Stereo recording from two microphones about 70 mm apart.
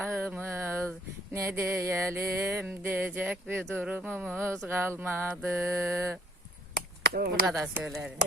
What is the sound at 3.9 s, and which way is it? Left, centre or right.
Music, right.